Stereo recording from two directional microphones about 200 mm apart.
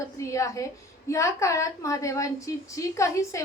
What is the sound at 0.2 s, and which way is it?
A woman's voice, 15° left (ahead or behind).